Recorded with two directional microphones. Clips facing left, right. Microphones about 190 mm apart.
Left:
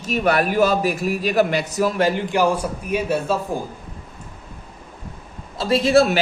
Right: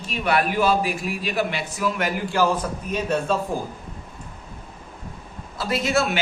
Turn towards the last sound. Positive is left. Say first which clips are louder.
# left 7 dB
turn(degrees=35)  # may be behind; listen again after turning